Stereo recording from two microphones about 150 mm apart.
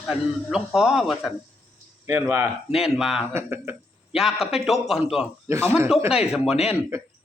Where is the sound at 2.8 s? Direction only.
5° right (ahead or behind).